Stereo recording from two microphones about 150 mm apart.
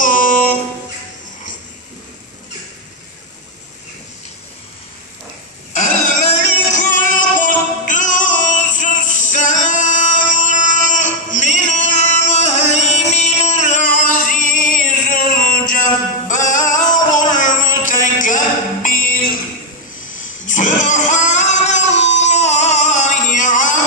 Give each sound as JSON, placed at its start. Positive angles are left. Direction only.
{"t": 0.0, "sound": "a capella", "side_deg": 60}
{"t": 6.3, "sound": "music", "side_deg": 55}
{"t": 20.4, "sound": "a sound", "side_deg": 55}